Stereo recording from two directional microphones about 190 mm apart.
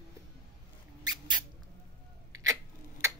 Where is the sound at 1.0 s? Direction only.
20° right (ahead or behind).